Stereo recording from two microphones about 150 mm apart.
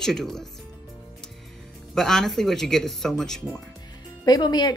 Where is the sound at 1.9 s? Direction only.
5° left (ahead or behind).